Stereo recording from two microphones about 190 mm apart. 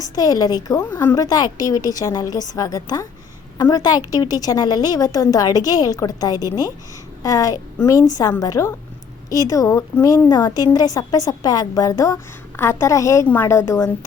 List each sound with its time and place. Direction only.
0.0 s a woman's voice: 20° left (ahead or behind)